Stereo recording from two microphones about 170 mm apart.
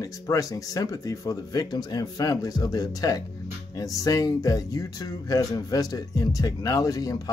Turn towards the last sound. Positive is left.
turn(degrees=20)  # may be behind; listen again after turning